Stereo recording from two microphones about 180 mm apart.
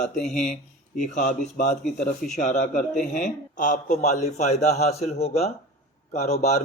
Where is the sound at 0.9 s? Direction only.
45° left (ahead or behind).